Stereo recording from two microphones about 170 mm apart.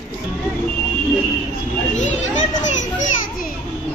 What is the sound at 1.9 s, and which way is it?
Children playing, 45° left (ahead or behind).